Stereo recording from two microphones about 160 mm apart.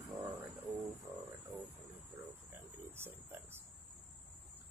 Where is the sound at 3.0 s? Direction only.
15° right (ahead or behind).